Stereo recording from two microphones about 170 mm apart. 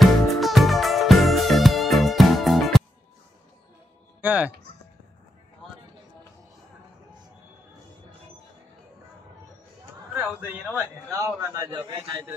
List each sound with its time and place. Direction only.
0.0 s music: centre (ahead or behind)
4.2 s speech: 10° right (ahead or behind)
10.1 s a sound: 10° right (ahead or behind)
10.8 s a man's voice: 15° right (ahead or behind)